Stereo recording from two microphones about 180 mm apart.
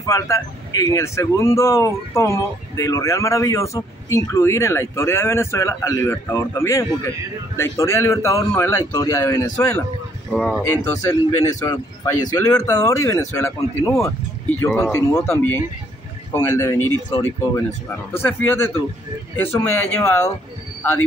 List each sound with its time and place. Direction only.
0.0 s speech: 20° left (ahead or behind)
10.3 s speech: 5° left (ahead or behind)
11.1 s speech: 15° left (ahead or behind)